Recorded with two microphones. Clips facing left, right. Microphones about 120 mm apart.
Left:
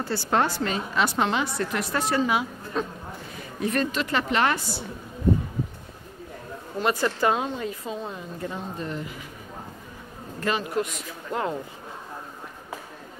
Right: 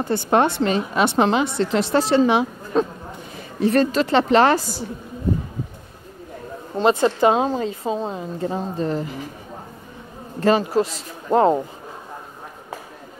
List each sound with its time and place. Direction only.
0.0 s a woman's voice: 20° right (ahead or behind)
6.8 s a woman's voice: 25° right (ahead or behind)
10.4 s a woman's voice: 30° right (ahead or behind)